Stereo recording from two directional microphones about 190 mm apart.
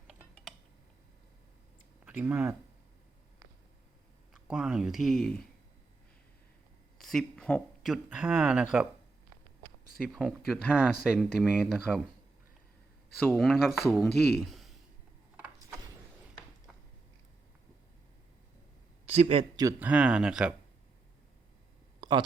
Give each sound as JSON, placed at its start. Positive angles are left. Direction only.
{"t": 2.0, "sound": "speech", "side_deg": -10}
{"t": 4.4, "sound": "speech", "side_deg": -5}
{"t": 7.0, "sound": "speech", "side_deg": 0}
{"t": 10.0, "sound": "speech", "side_deg": -5}
{"t": 13.1, "sound": "speech", "side_deg": 0}
{"t": 19.0, "sound": "a man's voice", "side_deg": -35}
{"t": 19.5, "sound": "speech", "side_deg": -15}
{"t": 19.9, "sound": "speech", "side_deg": -5}